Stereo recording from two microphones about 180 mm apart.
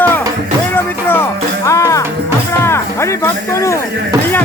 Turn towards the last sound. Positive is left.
turn(degrees=15)  # may be behind; listen again after turning